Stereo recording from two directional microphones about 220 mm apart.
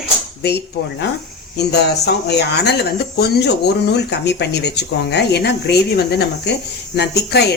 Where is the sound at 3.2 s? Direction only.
45° left (ahead or behind).